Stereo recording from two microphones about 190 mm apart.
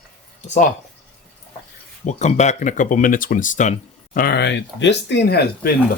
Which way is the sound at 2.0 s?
40° left (ahead or behind).